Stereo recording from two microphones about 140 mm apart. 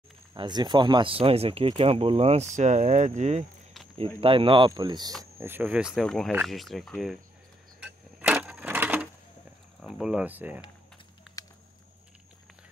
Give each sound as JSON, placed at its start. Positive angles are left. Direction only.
{"t": 0.3, "sound": "speech", "side_deg": -30}
{"t": 4.2, "sound": "speech", "side_deg": -40}
{"t": 5.2, "sound": "speech", "side_deg": -15}
{"t": 7.8, "sound": "cash register", "side_deg": -10}
{"t": 9.8, "sound": "speech", "side_deg": 0}
{"t": 11.4, "sound": "a sound", "side_deg": 25}